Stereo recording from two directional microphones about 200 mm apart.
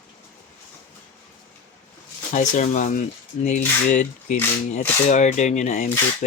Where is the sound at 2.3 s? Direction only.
40° left (ahead or behind).